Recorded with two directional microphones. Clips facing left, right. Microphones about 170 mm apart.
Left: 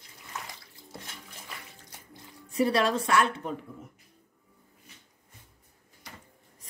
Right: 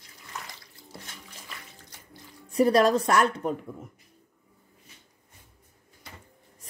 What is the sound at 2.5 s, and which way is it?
Speech, 40° right (ahead or behind).